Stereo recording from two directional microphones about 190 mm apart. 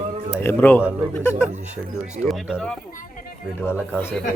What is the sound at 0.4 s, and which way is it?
Speech, 10° left (ahead or behind).